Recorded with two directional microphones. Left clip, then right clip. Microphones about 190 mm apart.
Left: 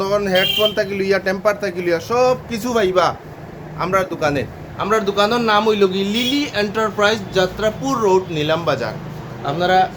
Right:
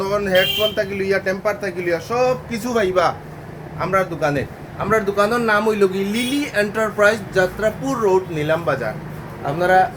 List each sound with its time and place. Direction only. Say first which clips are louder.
0.0 s a man's voice: left 1 dB; 10° left (ahead or behind)
9.5 s a man's voice: even; 5° right (ahead or behind)